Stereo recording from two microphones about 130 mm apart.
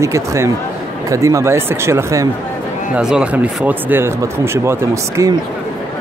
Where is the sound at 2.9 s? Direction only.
5° right (ahead or behind); by 5.3 s 25° right (ahead or behind).